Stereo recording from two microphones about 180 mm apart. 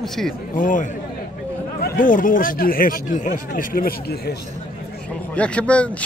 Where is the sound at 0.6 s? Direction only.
45° left (ahead or behind).